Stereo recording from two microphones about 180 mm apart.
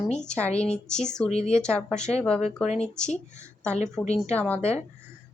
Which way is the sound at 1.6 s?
5° left (ahead or behind).